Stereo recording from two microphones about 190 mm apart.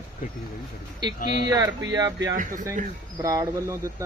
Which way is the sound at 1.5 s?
20° right (ahead or behind).